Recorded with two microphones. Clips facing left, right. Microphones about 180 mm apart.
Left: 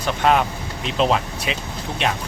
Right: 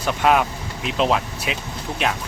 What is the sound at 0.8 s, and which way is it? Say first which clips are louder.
Speech: left 1 dB; 5° right (ahead or behind).